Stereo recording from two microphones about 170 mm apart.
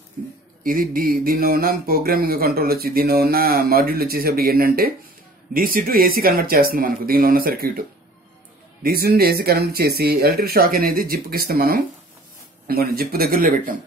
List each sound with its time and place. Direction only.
0.7 s speech: 55° right (ahead or behind)
8.8 s speech: 65° right (ahead or behind)